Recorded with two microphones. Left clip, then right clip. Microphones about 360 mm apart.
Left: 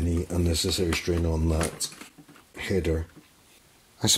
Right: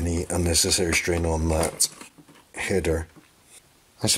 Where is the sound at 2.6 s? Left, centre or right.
Centre.